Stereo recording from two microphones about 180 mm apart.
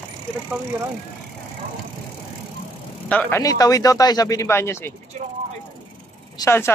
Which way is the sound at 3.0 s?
5° left (ahead or behind).